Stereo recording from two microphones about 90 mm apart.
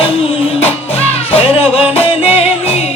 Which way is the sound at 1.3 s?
90° left.